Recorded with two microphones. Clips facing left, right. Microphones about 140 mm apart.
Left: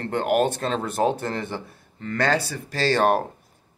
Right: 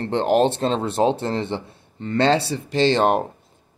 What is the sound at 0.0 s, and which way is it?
Speech, 30° right (ahead or behind).